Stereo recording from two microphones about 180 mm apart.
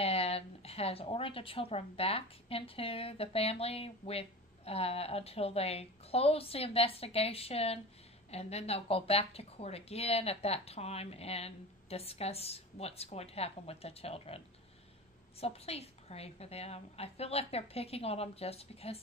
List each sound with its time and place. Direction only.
0.0 s a woman's voice: 35° left (ahead or behind)
15.4 s a woman's voice: 35° left (ahead or behind)